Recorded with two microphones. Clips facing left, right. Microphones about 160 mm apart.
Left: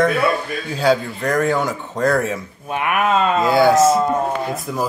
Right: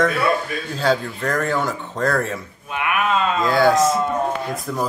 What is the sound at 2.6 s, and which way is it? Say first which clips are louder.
Speech: left 3 dB; 40° left (ahead or behind).